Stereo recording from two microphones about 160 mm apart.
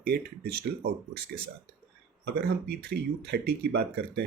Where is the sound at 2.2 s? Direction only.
85° right.